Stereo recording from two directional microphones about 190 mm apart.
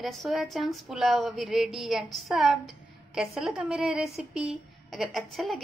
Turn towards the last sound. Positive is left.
turn(degrees=0)  # may be behind; listen again after turning